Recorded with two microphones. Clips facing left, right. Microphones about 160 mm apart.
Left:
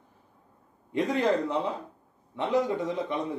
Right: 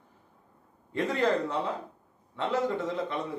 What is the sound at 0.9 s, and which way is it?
A man's voice, 15° left (ahead or behind).